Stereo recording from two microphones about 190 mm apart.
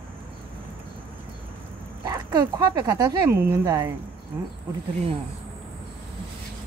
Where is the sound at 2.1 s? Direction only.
20° right (ahead or behind).